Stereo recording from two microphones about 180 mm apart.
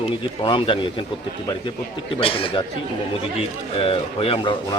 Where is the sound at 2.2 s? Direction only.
30° left (ahead or behind).